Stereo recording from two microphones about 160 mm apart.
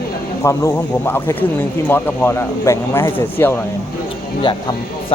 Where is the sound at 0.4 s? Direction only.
20° left (ahead or behind).